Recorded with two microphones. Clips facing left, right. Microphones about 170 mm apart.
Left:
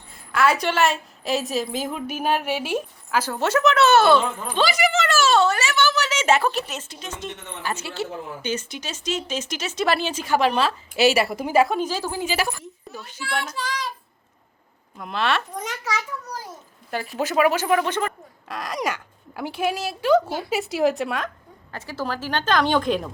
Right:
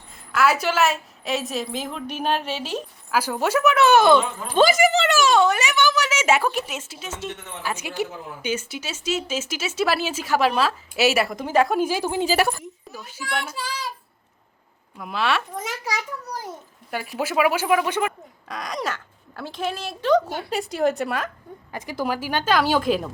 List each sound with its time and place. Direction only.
0.3 s speech: 5° right (ahead or behind)
3.1 s speech: 10° right (ahead or behind)
4.5 s a woman's voice: 45° right (ahead or behind)
5.0 s speech: 15° right (ahead or behind); by 11.8 s 5° left (ahead or behind)
11.8 s speech: 10° right (ahead or behind)
12.4 s a woman's voice: 50° right (ahead or behind)
12.9 s speech: 10° right (ahead or behind)
14.9 s speech: 5° right (ahead or behind)
16.9 s speech: 5° right (ahead or behind)
18.4 s speech: 5° left (ahead or behind)
21.7 s speech: 15° right (ahead or behind)